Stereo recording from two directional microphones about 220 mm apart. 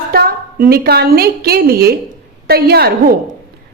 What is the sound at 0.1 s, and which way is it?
A woman's voice, 45° right (ahead or behind).